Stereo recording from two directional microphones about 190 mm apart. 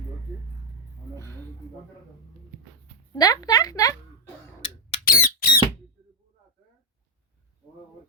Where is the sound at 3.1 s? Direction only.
20° left (ahead or behind).